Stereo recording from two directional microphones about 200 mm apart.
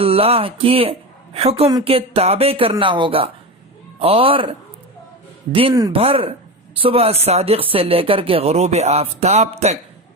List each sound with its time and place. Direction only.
0.0 s speech: 30° right (ahead or behind)